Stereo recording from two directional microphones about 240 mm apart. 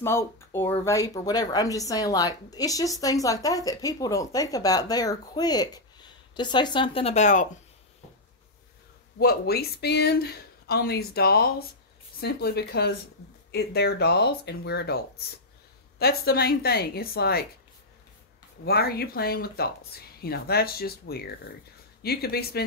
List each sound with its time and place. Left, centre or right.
0.0 s speech: centre; by 7.4 s left
9.2 s speech: left
18.7 s speech: left